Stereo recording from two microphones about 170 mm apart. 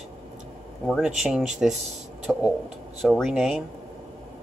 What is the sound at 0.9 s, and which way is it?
Speech, centre (ahead or behind).